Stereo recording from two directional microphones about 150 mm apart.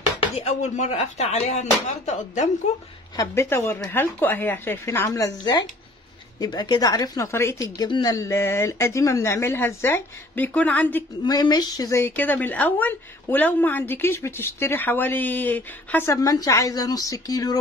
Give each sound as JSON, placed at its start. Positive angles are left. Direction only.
{"t": 0.2, "sound": "speech", "side_deg": 45}
{"t": 3.2, "sound": "a woman's voice", "side_deg": 20}
{"t": 11.2, "sound": "a woman's voice", "side_deg": 25}